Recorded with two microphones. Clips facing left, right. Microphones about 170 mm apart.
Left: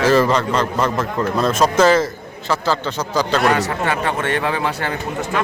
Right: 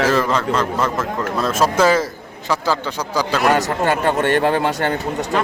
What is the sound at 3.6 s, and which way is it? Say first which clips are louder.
Speech: right 2 dB; 40° right (ahead or behind).